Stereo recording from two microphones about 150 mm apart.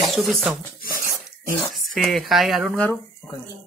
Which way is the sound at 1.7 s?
Centre (ahead or behind).